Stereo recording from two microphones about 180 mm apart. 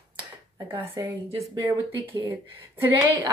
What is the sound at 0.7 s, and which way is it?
A woman's voice, 25° right (ahead or behind).